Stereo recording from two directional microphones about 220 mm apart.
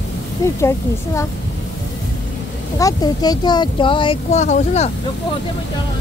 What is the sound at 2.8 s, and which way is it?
Speech, 15° left (ahead or behind).